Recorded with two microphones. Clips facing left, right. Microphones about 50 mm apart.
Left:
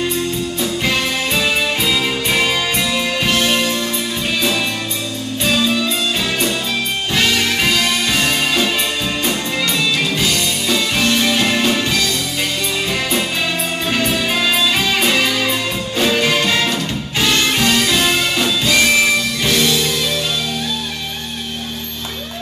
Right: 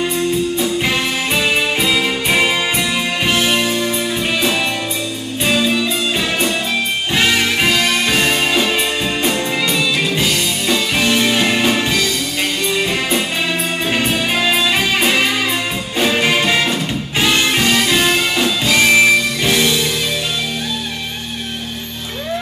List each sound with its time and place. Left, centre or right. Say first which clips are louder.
0.6 s music: right 1 dB; centre
5.4 s music: right 1 dB; centre
7.2 s music: right 1 dB; centre
13.9 s music: even; centre